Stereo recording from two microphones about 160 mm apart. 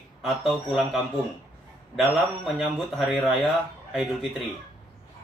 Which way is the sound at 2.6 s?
5° right (ahead or behind).